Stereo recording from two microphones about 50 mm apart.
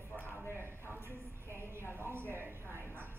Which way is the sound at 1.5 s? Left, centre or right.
Right.